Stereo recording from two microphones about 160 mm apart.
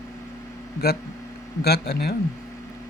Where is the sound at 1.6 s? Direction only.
90° left.